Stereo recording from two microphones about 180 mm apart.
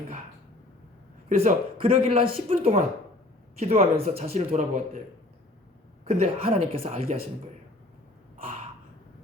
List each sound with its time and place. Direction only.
1.3 s speech: 35° right (ahead or behind)
6.1 s speech: 35° right (ahead or behind)